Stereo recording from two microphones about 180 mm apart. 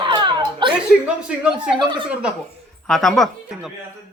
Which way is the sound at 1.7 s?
25° right (ahead or behind).